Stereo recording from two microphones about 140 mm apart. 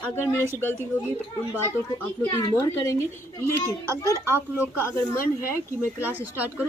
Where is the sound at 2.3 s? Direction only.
25° left (ahead or behind).